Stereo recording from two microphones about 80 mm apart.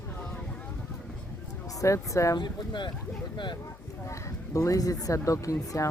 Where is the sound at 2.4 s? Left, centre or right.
Left.